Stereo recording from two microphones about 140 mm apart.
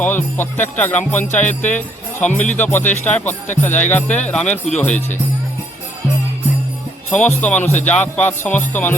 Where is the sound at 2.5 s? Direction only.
15° left (ahead or behind).